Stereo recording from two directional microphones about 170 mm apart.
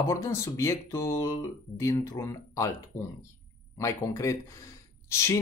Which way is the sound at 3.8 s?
20° left (ahead or behind).